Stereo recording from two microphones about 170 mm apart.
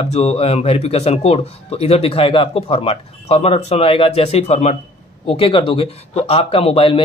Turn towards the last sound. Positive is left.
turn(degrees=30)  # may be behind; listen again after turning